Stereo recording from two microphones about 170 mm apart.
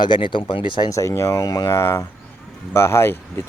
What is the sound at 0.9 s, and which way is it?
Speech, 15° left (ahead or behind).